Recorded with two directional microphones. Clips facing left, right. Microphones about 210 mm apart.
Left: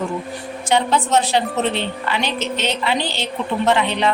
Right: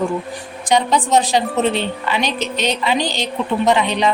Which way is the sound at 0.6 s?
15° right (ahead or behind).